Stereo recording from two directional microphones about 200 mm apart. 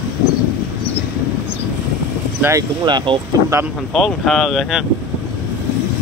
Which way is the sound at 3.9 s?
Centre (ahead or behind).